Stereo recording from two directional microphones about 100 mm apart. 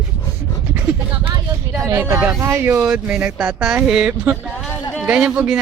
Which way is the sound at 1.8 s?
30° right (ahead or behind).